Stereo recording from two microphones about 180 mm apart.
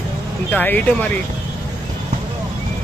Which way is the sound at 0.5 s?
10° left (ahead or behind).